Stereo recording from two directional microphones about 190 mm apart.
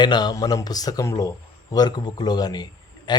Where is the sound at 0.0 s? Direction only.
20° left (ahead or behind).